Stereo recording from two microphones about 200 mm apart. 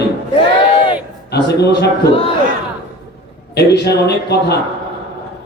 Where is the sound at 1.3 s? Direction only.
55° left (ahead or behind).